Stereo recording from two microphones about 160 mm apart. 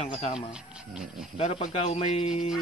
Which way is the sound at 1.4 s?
40° left (ahead or behind).